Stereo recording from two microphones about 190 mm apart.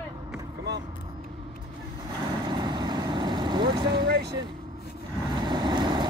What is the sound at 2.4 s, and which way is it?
Vehicle, 20° right (ahead or behind).